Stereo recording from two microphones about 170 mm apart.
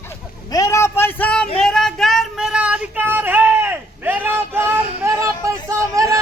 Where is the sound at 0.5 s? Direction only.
20° left (ahead or behind).